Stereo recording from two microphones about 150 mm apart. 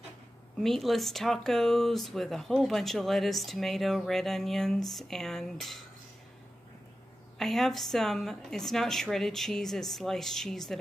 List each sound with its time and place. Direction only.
0.6 s speech: centre (ahead or behind)
7.3 s speech: centre (ahead or behind)